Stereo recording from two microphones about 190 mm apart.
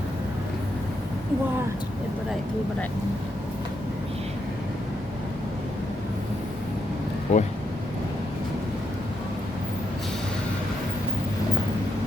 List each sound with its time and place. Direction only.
7.3 s speech: 35° left (ahead or behind)